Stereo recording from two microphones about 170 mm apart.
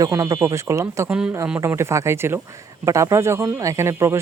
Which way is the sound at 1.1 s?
5° right (ahead or behind).